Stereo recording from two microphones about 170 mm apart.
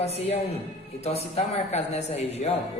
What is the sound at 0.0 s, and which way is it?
Speech, 40° left (ahead or behind).